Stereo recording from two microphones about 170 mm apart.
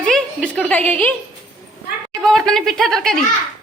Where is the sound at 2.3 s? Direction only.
Centre (ahead or behind).